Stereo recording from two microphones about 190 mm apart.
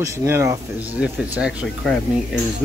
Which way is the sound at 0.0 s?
15° right (ahead or behind).